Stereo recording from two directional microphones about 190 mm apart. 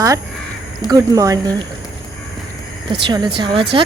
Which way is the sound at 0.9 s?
20° right (ahead or behind).